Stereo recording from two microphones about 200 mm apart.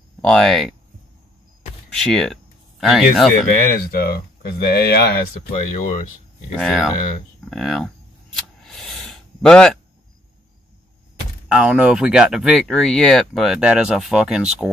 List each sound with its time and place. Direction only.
0.2 s speech: 5° left (ahead or behind)
1.9 s speech: 5° left (ahead or behind)
3.8 s speech: 50° left (ahead or behind)
6.5 s speech: centre (ahead or behind)
8.6 s a sound: centre (ahead or behind)
11.4 s speech: 5° right (ahead or behind)